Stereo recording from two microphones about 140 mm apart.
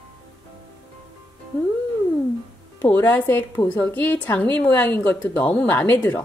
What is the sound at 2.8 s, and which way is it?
A woman's voice, 15° left (ahead or behind).